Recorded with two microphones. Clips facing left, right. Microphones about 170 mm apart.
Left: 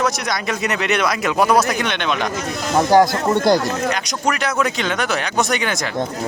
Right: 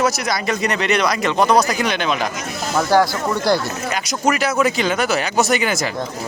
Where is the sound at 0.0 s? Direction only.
Centre (ahead or behind).